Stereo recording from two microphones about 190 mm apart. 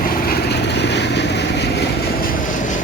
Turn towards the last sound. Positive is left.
turn(degrees=60)  # may be behind; listen again after turning